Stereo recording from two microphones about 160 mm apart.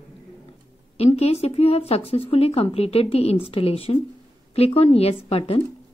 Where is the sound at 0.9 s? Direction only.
40° left (ahead or behind).